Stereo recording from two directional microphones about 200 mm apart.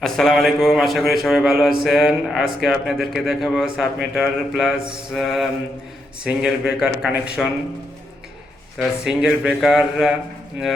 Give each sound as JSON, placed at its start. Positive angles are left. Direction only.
{"t": 0.0, "sound": "speech", "side_deg": 0}
{"t": 8.8, "sound": "speech", "side_deg": -5}